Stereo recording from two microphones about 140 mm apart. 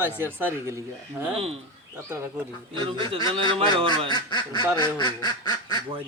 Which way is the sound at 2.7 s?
35° right (ahead or behind).